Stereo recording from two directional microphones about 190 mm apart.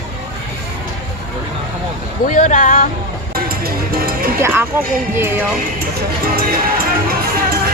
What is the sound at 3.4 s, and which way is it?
Speech, 50° right (ahead or behind).